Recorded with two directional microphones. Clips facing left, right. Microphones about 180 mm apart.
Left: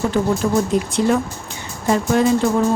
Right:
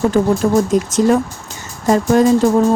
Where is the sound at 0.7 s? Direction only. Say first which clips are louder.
Right 4 dB; 45° right (ahead or behind).